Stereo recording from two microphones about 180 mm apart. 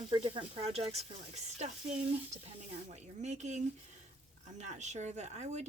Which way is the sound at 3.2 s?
40° right (ahead or behind).